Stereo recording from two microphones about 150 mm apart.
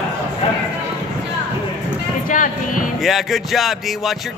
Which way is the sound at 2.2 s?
65° left (ahead or behind).